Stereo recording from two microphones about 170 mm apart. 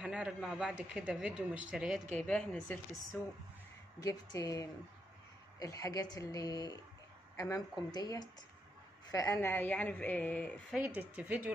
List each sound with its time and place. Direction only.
0.0 s a woman's voice: 5° right (ahead or behind)
10.8 s speech: 10° right (ahead or behind)